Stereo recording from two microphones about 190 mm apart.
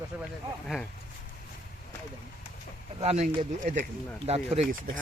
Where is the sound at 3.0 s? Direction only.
35° right (ahead or behind).